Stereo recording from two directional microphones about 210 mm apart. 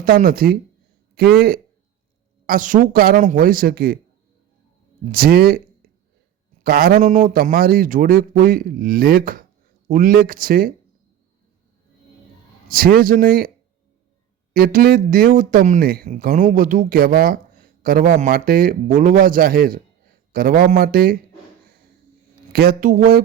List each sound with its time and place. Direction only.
0.0 s speech: 45° right (ahead or behind)
5.0 s speech: 45° right (ahead or behind)
12.6 s speech: 40° right (ahead or behind)
14.5 s speech: 45° right (ahead or behind)
22.5 s speech: 45° right (ahead or behind)